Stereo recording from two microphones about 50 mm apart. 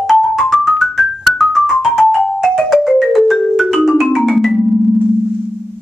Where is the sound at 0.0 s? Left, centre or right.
Centre.